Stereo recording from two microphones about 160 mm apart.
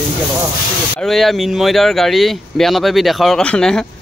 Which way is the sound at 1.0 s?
Centre (ahead or behind).